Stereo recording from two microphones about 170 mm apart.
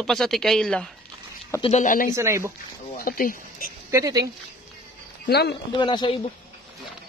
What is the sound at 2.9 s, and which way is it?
Speech, 55° left (ahead or behind).